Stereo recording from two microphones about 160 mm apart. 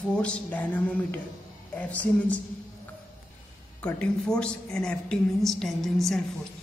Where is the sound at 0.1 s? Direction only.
5° left (ahead or behind).